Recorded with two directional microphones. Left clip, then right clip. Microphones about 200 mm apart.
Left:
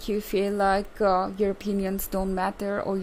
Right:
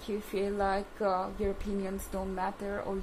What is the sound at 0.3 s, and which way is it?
Speech, 55° left (ahead or behind).